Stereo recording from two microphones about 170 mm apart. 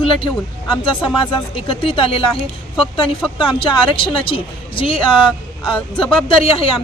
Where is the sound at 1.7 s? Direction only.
30° left (ahead or behind).